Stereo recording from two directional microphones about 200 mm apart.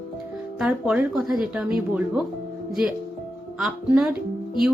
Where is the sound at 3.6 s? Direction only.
5° right (ahead or behind).